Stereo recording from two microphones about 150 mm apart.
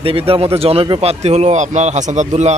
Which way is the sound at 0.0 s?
40° right (ahead or behind).